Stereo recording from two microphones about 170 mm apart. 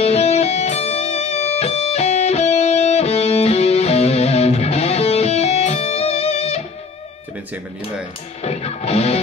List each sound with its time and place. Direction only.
0.0 s music: 40° left (ahead or behind)
8.4 s music: 40° left (ahead or behind)